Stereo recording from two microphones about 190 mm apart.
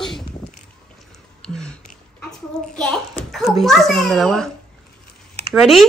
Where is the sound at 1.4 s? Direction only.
5° left (ahead or behind).